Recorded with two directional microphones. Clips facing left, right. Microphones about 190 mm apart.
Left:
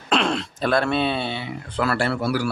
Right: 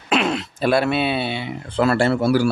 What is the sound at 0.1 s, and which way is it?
Speech, 5° right (ahead or behind).